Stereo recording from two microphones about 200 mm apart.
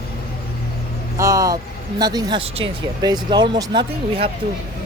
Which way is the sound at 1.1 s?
15° right (ahead or behind).